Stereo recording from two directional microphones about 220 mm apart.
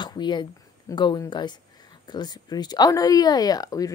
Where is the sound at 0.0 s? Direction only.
20° left (ahead or behind).